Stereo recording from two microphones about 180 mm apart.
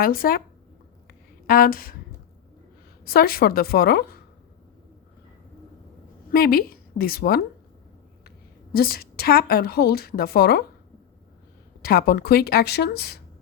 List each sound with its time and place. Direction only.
0.0 s speech: 55° left (ahead or behind)
1.0 s a sound: 50° left (ahead or behind)
3.0 s a woman's voice: 55° left (ahead or behind)
6.3 s a woman's voice: 55° left (ahead or behind)
8.7 s a woman's voice: 55° left (ahead or behind)
11.8 s a woman's voice: 55° left (ahead or behind)